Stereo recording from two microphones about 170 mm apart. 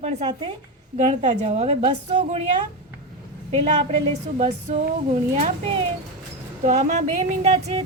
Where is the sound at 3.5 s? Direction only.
40° right (ahead or behind).